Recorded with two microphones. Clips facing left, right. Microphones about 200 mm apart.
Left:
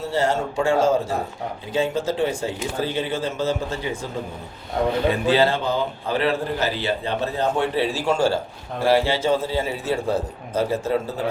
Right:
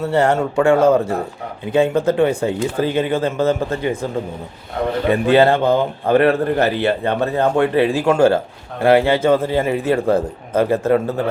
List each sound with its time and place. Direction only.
0.0 s a man's voice: 60° right (ahead or behind)
5.1 s a man's voice: 60° right (ahead or behind)